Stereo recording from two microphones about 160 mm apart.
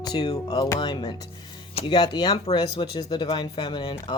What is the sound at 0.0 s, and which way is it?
Speech, 25° left (ahead or behind).